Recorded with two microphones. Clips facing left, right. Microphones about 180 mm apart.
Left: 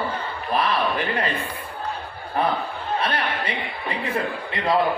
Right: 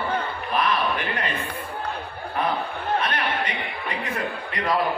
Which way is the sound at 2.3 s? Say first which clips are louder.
Left 2 dB; 30° left (ahead or behind).